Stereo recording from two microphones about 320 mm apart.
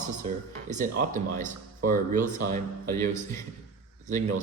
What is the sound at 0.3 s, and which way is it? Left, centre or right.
Speech, right.